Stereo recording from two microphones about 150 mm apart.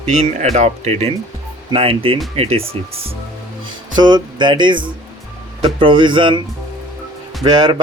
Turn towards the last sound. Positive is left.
turn(degrees=-30)  # may be behind; listen again after turning